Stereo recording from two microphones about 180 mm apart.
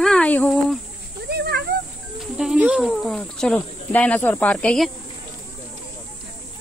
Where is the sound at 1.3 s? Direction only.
65° right (ahead or behind).